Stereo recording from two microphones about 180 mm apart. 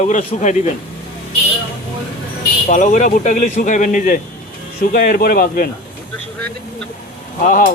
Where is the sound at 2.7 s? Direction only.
45° left (ahead or behind).